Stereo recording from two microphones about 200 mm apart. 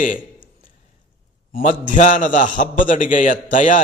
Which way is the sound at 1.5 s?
40° left (ahead or behind).